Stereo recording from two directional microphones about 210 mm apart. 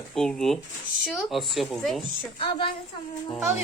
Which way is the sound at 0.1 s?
Centre (ahead or behind).